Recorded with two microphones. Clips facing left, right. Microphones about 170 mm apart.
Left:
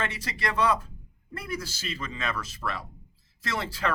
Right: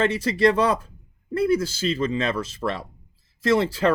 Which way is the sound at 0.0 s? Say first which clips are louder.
Right 13 dB; 25° right (ahead or behind).